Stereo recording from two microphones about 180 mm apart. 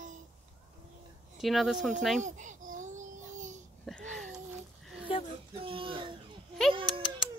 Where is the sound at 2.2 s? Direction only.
45° right (ahead or behind).